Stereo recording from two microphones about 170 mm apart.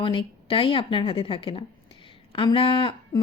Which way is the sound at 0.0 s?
30° left (ahead or behind).